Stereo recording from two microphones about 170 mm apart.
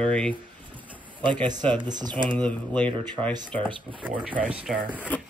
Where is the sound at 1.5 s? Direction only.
25° right (ahead or behind).